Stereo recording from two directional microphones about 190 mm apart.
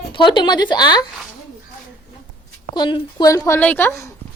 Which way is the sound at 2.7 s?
25° left (ahead or behind).